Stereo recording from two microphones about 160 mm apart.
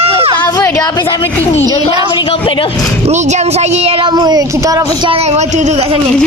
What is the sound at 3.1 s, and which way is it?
Speech, 45° right (ahead or behind).